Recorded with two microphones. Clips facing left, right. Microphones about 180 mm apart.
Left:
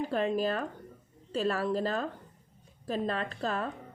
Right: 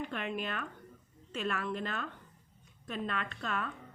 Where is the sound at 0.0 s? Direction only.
35° left (ahead or behind).